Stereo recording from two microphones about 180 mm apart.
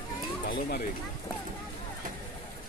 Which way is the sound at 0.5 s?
55° left (ahead or behind).